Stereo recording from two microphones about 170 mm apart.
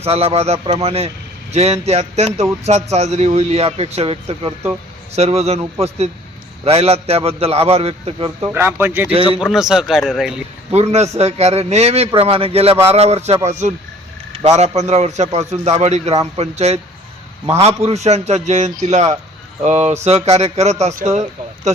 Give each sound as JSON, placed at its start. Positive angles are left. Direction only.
{"t": 0.0, "sound": "speech", "side_deg": -35}
{"t": 6.7, "sound": "speech", "side_deg": -35}
{"t": 8.4, "sound": "speech", "side_deg": -10}
{"t": 9.1, "sound": "speech", "side_deg": -35}
{"t": 9.4, "sound": "speech", "side_deg": -5}
{"t": 10.7, "sound": "speech", "side_deg": -40}